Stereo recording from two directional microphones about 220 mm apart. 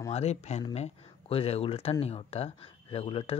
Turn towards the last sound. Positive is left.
turn(degrees=25)  # may be behind; listen again after turning